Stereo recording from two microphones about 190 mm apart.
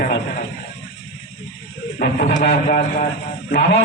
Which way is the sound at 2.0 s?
45° left (ahead or behind).